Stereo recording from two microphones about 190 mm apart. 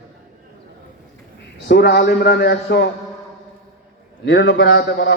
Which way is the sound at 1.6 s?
60° left (ahead or behind).